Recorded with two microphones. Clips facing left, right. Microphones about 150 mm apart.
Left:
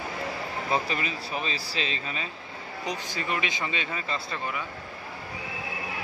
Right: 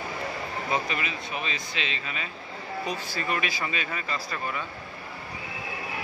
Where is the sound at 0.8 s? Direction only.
35° left (ahead or behind).